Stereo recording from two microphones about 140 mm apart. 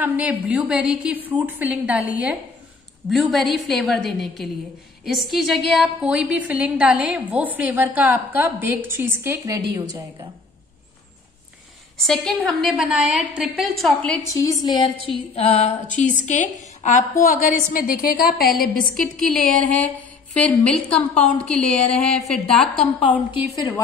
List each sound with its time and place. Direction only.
0.0 s a woman's voice: 10° right (ahead or behind)
3.1 s a woman's voice: centre (ahead or behind); by 9.9 s 25° right (ahead or behind)
12.0 s a woman's voice: 5° left (ahead or behind)
14.2 s a woman's voice: 25° left (ahead or behind)
15.1 s a sound: 45° left (ahead or behind)
16.3 s a woman's voice: 60° left (ahead or behind)
17.2 s a woman's voice: 80° left
18.9 s a woman's voice: centre (ahead or behind)